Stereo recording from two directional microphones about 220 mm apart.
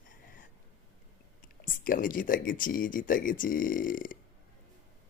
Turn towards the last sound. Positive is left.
turn(degrees=40)  # may be behind; listen again after turning